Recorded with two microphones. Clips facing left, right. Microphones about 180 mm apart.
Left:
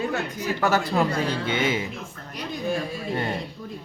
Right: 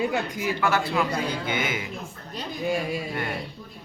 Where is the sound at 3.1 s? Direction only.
25° left (ahead or behind).